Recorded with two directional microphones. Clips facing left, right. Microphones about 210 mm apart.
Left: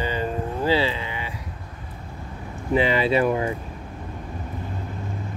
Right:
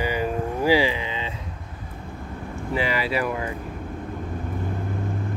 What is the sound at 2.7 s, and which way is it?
Speech, 25° left (ahead or behind).